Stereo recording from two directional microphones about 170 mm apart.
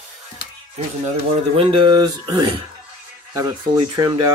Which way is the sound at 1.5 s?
30° right (ahead or behind).